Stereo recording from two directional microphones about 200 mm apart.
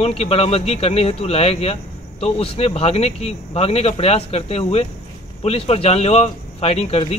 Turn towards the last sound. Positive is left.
turn(degrees=30)  # may be behind; listen again after turning